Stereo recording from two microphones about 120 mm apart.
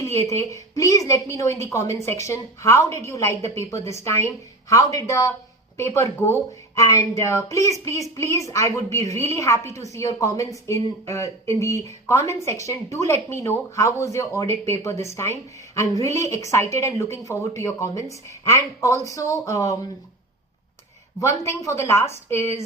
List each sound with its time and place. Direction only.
0.0 s a woman's voice: 20° left (ahead or behind)
21.2 s a woman's voice: 25° left (ahead or behind)